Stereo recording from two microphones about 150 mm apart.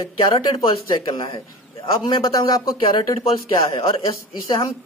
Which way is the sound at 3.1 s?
35° left (ahead or behind).